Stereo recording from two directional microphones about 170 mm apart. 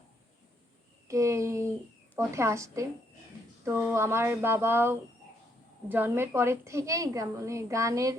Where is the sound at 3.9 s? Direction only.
15° right (ahead or behind).